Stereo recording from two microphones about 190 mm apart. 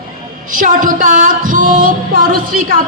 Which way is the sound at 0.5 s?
45° right (ahead or behind).